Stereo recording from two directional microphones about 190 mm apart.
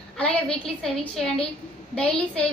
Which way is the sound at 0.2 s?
5° left (ahead or behind).